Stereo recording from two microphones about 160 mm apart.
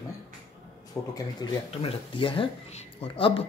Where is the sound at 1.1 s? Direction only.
25° left (ahead or behind).